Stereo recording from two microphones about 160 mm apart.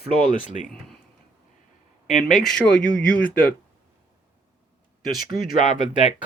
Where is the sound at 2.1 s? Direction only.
50° left (ahead or behind).